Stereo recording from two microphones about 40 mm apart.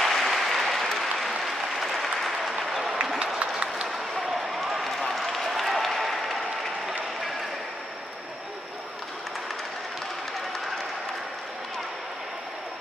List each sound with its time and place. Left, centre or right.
0.0 s applause: centre
3.3 s a sound: right
4.3 s run: centre